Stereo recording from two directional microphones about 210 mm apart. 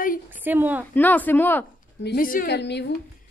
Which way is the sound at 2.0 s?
45° left (ahead or behind).